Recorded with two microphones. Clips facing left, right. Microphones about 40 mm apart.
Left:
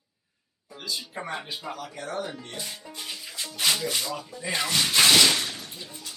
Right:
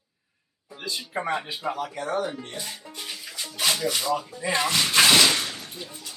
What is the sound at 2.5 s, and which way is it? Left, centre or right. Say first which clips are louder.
Speech: right 1 dB; centre.